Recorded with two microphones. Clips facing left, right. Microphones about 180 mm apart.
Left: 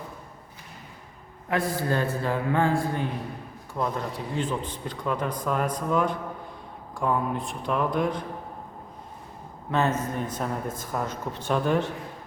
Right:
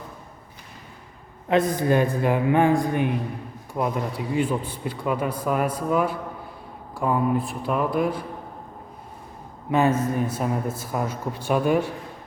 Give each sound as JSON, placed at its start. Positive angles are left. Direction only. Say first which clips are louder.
{"t": 1.5, "sound": "a man's voice", "louder": "right 6 dB", "side_deg": -20}
{"t": 9.7, "sound": "a man's voice", "louder": "right 5 dB", "side_deg": -10}